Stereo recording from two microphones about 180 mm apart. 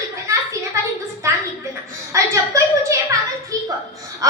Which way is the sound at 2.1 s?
15° right (ahead or behind).